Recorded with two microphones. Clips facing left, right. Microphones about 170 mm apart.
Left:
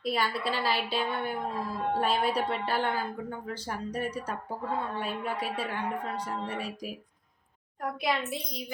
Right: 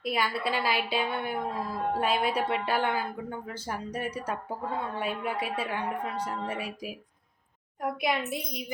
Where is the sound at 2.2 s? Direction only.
5° right (ahead or behind).